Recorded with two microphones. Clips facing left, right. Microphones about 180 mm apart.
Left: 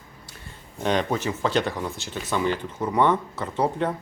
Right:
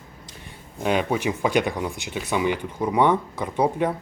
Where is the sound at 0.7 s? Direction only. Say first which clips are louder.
Right 1 dB; 5° right (ahead or behind).